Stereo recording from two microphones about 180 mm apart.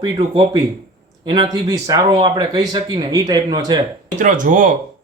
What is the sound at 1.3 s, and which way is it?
Speech, 25° right (ahead or behind).